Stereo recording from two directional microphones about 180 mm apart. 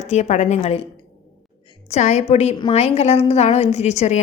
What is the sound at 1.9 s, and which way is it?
A woman's voice, 40° left (ahead or behind).